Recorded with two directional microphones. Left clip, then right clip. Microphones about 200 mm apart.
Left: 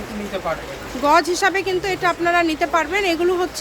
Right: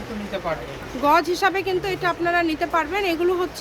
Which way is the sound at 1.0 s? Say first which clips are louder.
Left 2 dB; 5° left (ahead or behind).